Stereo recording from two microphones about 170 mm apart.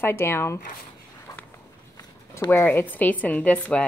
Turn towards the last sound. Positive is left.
turn(degrees=10)  # may be behind; listen again after turning